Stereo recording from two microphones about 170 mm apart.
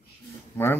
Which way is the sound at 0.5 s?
15° left (ahead or behind).